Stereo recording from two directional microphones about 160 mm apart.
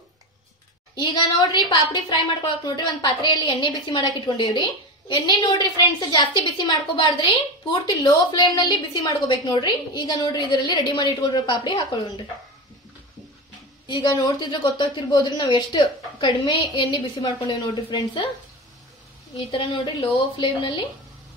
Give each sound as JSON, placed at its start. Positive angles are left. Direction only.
{"t": 0.9, "sound": "a woman's voice", "side_deg": 30}
{"t": 13.8, "sound": "a woman's voice", "side_deg": 30}
{"t": 19.3, "sound": "a woman's voice", "side_deg": 35}